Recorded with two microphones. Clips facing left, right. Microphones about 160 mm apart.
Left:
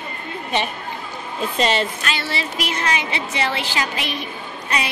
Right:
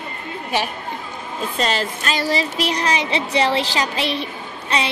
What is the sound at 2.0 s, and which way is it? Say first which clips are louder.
A woman's voice: right 5 dB; 40° right (ahead or behind).